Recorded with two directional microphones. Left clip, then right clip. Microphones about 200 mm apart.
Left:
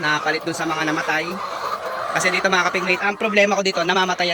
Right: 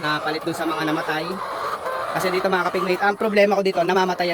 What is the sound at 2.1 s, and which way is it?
Speech, 10° right (ahead or behind).